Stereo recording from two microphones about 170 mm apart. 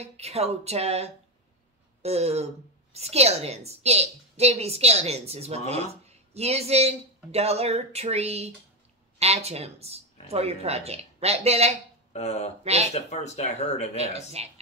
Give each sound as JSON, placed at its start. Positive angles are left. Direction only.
{"t": 0.0, "sound": "a woman's voice", "side_deg": -40}
{"t": 12.1, "sound": "speech", "side_deg": 40}
{"t": 12.6, "sound": "a woman's voice", "side_deg": -40}
{"t": 12.9, "sound": "speech", "side_deg": 40}
{"t": 13.9, "sound": "a woman's voice", "side_deg": -40}